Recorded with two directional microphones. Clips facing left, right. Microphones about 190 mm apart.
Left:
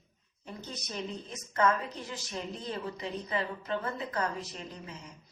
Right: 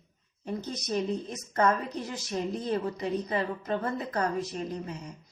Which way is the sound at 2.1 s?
45° right (ahead or behind).